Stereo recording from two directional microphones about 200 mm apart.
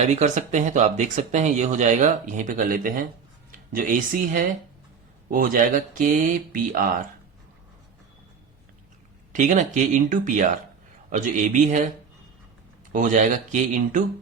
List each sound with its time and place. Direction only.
0.0 s speech: 35° right (ahead or behind)
9.3 s speech: 35° right (ahead or behind)
12.9 s speech: 40° right (ahead or behind)